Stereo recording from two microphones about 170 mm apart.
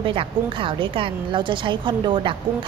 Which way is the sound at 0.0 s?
30° right (ahead or behind).